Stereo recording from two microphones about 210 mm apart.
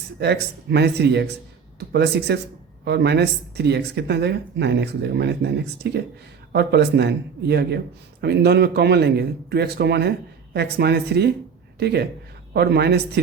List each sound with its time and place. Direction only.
0.2 s speech: 50° right (ahead or behind)